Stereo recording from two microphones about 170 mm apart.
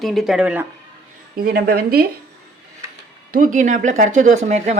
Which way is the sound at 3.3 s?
55° right (ahead or behind).